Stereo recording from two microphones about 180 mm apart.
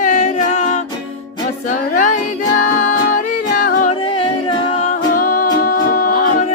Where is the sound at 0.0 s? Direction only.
45° left (ahead or behind).